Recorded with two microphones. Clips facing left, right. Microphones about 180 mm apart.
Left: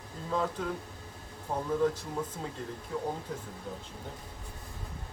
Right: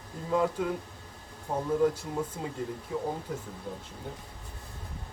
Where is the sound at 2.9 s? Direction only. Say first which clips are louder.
Right 1 dB; centre (ahead or behind).